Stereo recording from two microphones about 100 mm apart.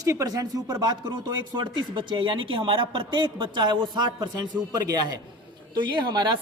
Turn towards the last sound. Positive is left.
turn(degrees=-50)  # may be behind; listen again after turning